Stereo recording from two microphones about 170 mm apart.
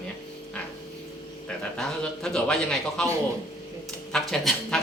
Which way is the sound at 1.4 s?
5° left (ahead or behind).